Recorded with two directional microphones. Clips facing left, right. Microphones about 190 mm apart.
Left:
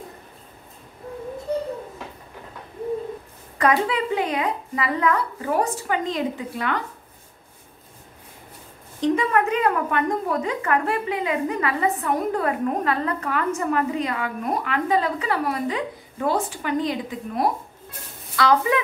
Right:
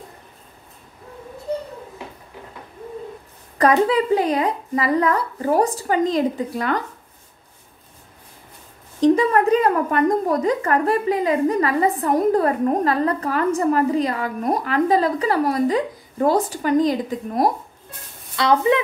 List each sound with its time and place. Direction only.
3.5 s a woman's voice: 40° right (ahead or behind)
9.0 s a woman's voice: 35° right (ahead or behind)
18.3 s speech: 25° right (ahead or behind)